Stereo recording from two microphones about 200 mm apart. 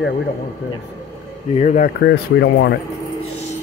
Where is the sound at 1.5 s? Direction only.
35° left (ahead or behind).